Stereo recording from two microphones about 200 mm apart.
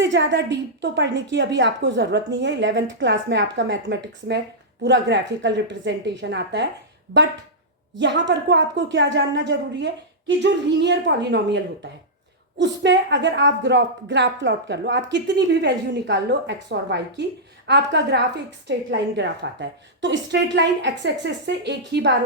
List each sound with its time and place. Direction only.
0.0 s a woman's voice: 65° right (ahead or behind)
7.9 s a woman's voice: 65° right (ahead or behind)